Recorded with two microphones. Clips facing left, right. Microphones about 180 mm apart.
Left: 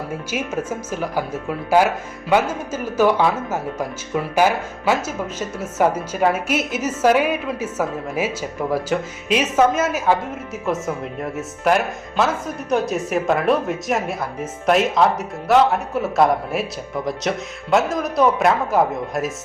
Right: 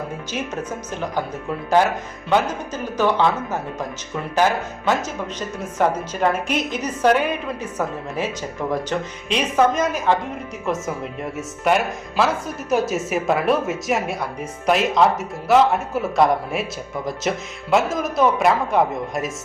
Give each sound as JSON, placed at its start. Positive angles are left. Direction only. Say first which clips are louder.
{"t": 0.9, "sound": "speech", "louder": "left 2 dB", "side_deg": 5}